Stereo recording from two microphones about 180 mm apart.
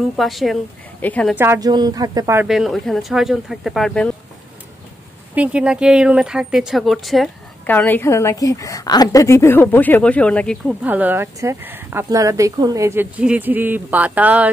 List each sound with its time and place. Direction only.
0.2 s a woman's voice: centre (ahead or behind)
1.3 s speech: 15° right (ahead or behind)
2.4 s speech: centre (ahead or behind)
5.3 s a woman's voice: 5° right (ahead or behind)
10.8 s speech: 10° right (ahead or behind)